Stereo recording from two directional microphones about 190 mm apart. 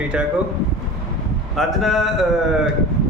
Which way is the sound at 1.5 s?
Centre (ahead or behind).